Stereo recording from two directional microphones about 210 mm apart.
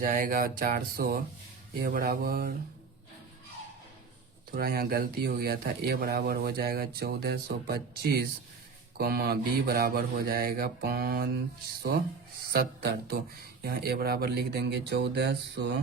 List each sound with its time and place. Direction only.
0.0 s speech: 40° right (ahead or behind)
4.5 s speech: 45° right (ahead or behind)
12.5 s speech: 50° right (ahead or behind)